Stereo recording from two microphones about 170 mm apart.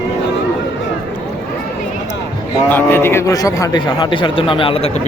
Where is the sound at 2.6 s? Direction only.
10° left (ahead or behind); by 4.9 s 30° left (ahead or behind).